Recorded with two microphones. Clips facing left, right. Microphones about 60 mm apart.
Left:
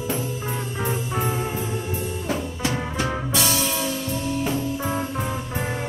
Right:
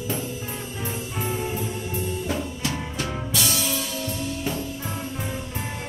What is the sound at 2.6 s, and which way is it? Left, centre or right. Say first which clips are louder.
Music: left 4 dB; left.